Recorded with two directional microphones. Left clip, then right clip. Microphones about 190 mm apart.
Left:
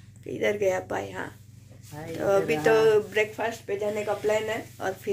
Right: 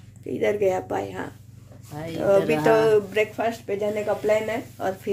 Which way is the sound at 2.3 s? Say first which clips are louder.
Right 3 dB; centre (ahead or behind).